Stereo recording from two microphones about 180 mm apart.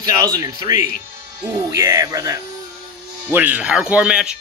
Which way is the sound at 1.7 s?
20° right (ahead or behind).